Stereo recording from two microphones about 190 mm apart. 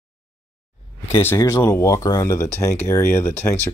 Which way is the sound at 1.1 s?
15° left (ahead or behind).